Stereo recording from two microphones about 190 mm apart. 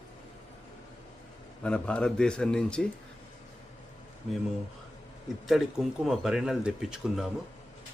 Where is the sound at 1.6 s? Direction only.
5° left (ahead or behind).